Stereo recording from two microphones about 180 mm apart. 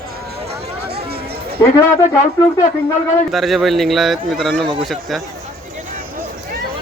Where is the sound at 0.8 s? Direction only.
65° right (ahead or behind).